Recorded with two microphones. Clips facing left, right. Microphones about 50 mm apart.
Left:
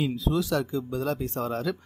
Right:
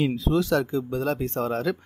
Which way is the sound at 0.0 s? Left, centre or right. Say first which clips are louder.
Right 3 dB; right.